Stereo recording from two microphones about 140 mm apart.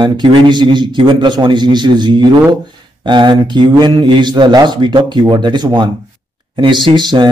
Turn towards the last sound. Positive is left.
turn(degrees=-35)  # may be behind; listen again after turning